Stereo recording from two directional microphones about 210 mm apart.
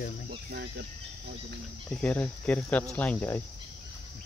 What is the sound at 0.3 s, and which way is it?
Cricket, 50° right (ahead or behind).